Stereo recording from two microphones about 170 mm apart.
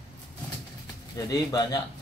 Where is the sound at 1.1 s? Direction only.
20° left (ahead or behind).